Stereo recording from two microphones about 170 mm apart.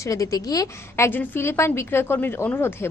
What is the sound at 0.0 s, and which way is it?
Speech, 20° left (ahead or behind).